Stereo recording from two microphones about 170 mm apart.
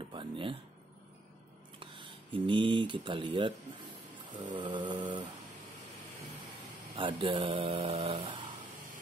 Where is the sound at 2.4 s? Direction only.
30° right (ahead or behind).